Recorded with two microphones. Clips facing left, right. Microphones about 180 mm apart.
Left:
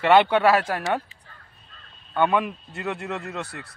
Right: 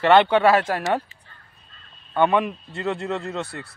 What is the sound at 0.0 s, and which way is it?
Speech, 10° left (ahead or behind).